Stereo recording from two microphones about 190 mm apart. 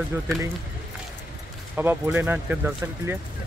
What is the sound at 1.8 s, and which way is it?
Speech, 10° right (ahead or behind).